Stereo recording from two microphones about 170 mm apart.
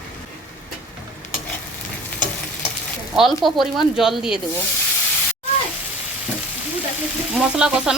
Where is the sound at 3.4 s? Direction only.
Centre (ahead or behind).